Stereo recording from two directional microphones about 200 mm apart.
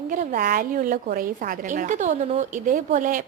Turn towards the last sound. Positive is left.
turn(degrees=-40)  # may be behind; listen again after turning